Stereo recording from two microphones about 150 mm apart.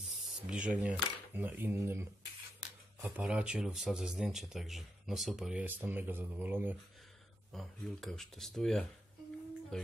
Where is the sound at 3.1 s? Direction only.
5° right (ahead or behind).